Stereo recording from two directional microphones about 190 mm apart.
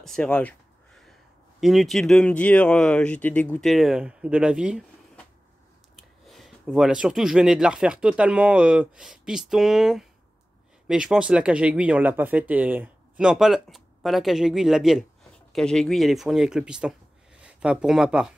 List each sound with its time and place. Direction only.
0.0 s a sound: 5° left (ahead or behind)
1.6 s speech: centre (ahead or behind)
5.9 s speech: centre (ahead or behind)